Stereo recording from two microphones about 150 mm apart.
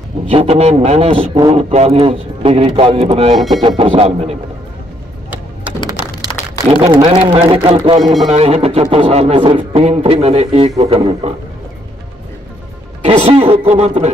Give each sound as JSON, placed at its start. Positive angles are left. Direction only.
{"t": 0.3, "sound": "a man's voice", "side_deg": -45}
{"t": 3.3, "sound": "speech", "side_deg": 0}
{"t": 3.6, "sound": "speech", "side_deg": -40}
{"t": 6.7, "sound": "speech", "side_deg": -35}
{"t": 8.0, "sound": "speech", "side_deg": 0}
{"t": 8.3, "sound": "speech", "side_deg": -45}
{"t": 13.0, "sound": "speech", "side_deg": -40}